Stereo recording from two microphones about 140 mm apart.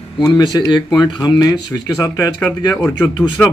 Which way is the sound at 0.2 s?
30° left (ahead or behind).